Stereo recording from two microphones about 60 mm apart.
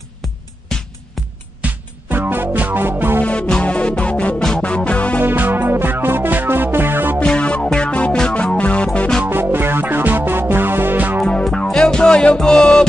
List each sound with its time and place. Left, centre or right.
0.7 s music: centre
2.1 s music: right
3.3 s music: centre
4.4 s music: centre
4.6 s music: left
5.2 s music: right
7.2 s music: centre
9.2 s music: right
11.4 s music: centre